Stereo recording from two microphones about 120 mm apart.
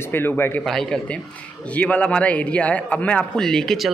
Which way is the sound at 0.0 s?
20° left (ahead or behind).